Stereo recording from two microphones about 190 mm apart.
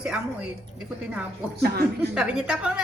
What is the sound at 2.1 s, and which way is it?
Speech, 5° right (ahead or behind).